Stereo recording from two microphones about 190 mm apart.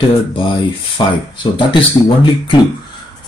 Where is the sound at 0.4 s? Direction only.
25° left (ahead or behind).